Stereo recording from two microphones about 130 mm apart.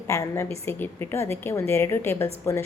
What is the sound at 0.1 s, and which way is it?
A woman's voice, 20° left (ahead or behind).